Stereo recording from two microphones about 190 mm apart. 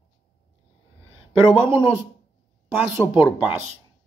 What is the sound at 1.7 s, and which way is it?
Speech, 15° right (ahead or behind).